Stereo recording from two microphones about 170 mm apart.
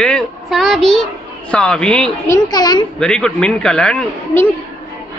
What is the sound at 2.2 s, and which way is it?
Speech, 20° left (ahead or behind).